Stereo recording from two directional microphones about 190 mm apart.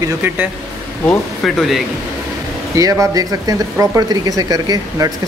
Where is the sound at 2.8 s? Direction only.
20° right (ahead or behind).